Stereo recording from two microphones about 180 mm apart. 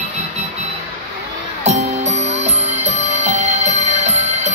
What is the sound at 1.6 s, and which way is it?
Music, 35° right (ahead or behind).